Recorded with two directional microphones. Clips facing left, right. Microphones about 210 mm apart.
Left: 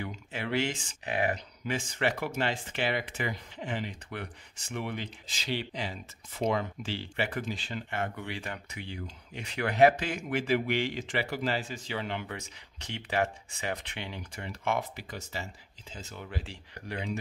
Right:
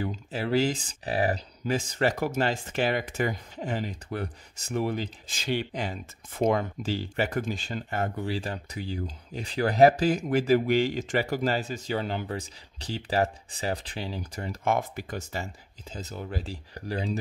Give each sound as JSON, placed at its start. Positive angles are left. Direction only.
{"t": 0.0, "sound": "speech", "side_deg": -35}